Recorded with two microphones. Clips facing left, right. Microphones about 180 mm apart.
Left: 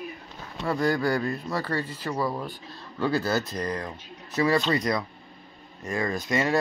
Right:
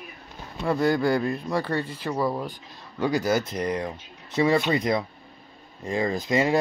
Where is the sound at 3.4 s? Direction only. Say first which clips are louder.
Right 3 dB; 20° right (ahead or behind).